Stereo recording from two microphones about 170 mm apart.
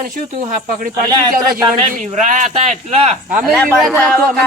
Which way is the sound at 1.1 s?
25° right (ahead or behind).